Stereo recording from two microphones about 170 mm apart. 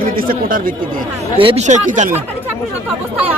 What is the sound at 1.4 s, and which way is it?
Speech, 30° right (ahead or behind).